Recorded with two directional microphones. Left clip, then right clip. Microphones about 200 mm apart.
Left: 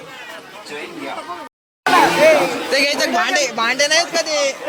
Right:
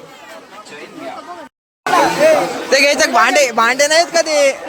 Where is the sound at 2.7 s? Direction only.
35° right (ahead or behind).